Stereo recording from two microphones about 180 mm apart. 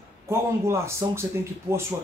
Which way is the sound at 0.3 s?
15° right (ahead or behind).